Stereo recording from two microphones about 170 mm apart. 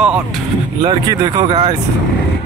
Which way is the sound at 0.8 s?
25° right (ahead or behind).